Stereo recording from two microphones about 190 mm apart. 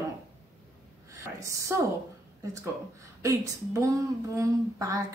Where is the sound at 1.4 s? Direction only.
15° right (ahead or behind).